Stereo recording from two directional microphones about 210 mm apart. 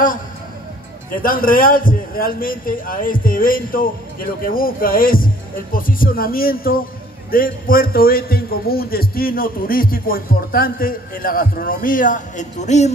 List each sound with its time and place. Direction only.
1.2 s a man's voice: 40° left (ahead or behind)